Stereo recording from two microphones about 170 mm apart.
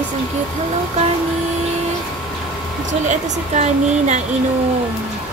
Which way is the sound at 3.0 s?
45° right (ahead or behind).